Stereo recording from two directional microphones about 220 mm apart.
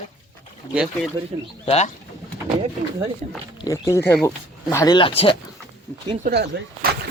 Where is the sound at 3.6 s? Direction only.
15° left (ahead or behind).